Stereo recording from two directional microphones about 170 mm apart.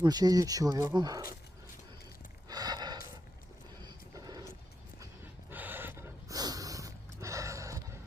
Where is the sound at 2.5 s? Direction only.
25° right (ahead or behind).